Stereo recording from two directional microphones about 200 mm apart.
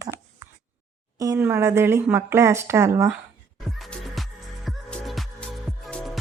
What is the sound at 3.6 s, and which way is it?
Music, centre (ahead or behind).